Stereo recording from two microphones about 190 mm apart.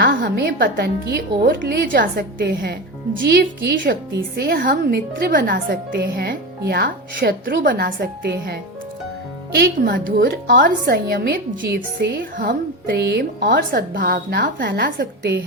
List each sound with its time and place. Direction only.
0.0 s a woman's voice: 55° right (ahead or behind)
9.6 s a woman's voice: 55° right (ahead or behind)